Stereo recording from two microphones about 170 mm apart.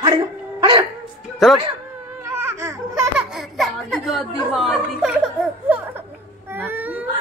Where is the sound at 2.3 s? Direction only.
15° right (ahead or behind).